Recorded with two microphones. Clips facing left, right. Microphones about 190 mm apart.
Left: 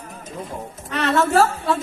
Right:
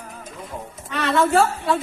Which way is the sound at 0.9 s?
Centre (ahead or behind).